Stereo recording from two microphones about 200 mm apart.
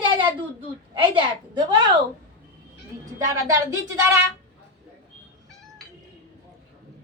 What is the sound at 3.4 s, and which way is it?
Speech, 15° right (ahead or behind).